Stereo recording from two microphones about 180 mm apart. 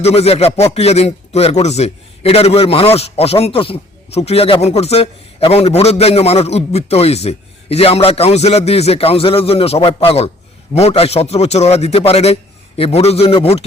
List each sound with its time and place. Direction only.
0.0 s speech: 35° left (ahead or behind)